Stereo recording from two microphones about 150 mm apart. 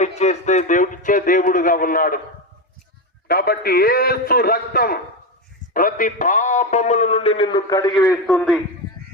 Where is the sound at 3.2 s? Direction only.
90° left.